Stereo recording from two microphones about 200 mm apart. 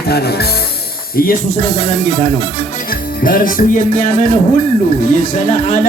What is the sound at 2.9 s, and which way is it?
Music, 45° left (ahead or behind).